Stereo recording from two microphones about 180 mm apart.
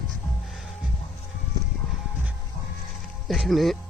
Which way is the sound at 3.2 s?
Centre (ahead or behind).